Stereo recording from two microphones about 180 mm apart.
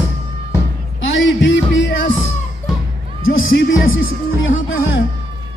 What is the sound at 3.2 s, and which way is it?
Speech, 90° left.